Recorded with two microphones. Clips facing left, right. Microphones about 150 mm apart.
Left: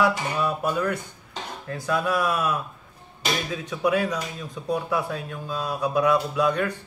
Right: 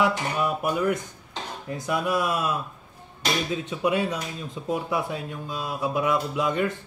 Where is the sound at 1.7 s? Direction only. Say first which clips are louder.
Left 1 dB; 20° right (ahead or behind).